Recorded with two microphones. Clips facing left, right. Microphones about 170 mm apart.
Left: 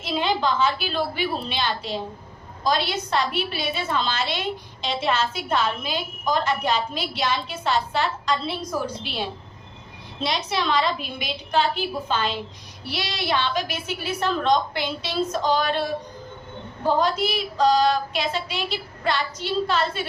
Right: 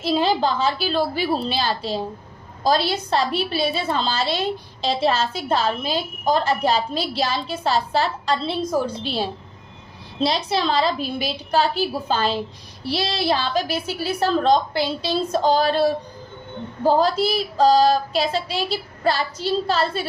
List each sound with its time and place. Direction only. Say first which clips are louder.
0.0 s a woman's voice: right 4 dB; 35° right (ahead or behind)